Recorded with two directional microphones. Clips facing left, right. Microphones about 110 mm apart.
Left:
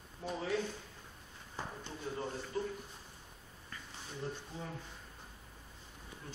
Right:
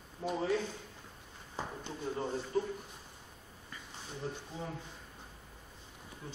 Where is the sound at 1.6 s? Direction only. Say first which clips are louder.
Right 3 dB; 25° right (ahead or behind).